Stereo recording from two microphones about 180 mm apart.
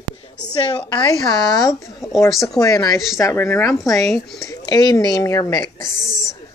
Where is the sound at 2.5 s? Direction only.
20° left (ahead or behind).